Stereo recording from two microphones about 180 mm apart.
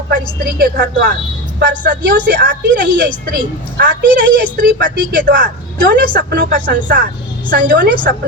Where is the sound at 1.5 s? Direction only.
55° right (ahead or behind).